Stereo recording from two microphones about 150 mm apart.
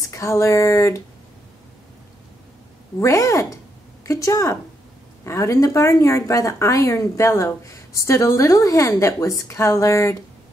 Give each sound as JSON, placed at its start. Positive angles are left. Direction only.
{"t": 0.1, "sound": "speech", "side_deg": 20}
{"t": 3.0, "sound": "a woman's voice", "side_deg": 20}